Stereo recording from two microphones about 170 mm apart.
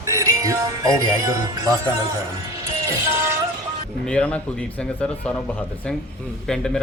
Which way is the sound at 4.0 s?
5° left (ahead or behind).